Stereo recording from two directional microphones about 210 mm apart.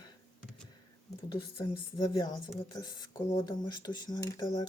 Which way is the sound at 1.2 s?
20° left (ahead or behind).